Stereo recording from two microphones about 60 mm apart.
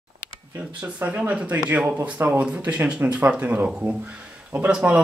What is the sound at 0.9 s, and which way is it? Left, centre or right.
Speech, right.